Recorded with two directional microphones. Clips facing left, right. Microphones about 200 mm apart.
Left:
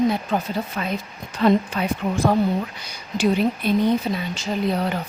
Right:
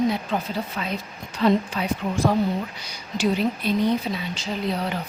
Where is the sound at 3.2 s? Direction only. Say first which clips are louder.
Left 3 dB; 55° left (ahead or behind).